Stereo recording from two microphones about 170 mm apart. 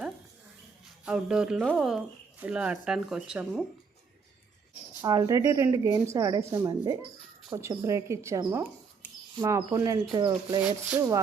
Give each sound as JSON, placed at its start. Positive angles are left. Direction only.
{"t": 1.0, "sound": "speech", "side_deg": -5}
{"t": 5.0, "sound": "speech", "side_deg": -20}